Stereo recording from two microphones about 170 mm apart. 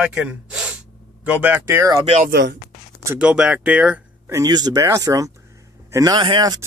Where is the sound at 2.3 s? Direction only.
85° right.